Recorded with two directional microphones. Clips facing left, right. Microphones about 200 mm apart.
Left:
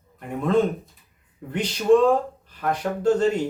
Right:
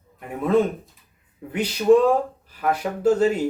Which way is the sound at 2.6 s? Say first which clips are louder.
Right 1 dB; 5° right (ahead or behind).